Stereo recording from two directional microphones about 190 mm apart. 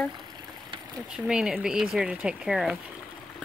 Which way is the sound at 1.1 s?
5° right (ahead or behind).